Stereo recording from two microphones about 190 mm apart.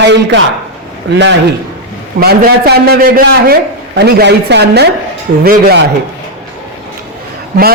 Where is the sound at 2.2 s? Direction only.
55° right (ahead or behind).